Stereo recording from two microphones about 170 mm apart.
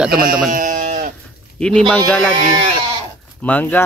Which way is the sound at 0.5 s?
50° right (ahead or behind).